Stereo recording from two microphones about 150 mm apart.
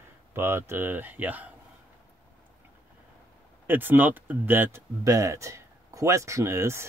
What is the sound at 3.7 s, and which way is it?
Speech, 15° right (ahead or behind).